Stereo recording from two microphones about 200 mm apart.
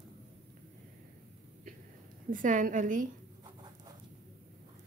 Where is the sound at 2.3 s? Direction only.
40° right (ahead or behind).